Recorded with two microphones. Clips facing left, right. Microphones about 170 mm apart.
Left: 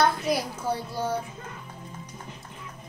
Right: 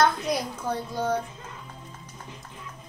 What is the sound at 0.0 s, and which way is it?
A child's voice, 5° left (ahead or behind).